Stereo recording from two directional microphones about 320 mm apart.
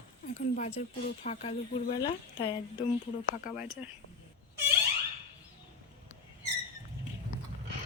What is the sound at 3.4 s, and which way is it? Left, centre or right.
Speech, centre.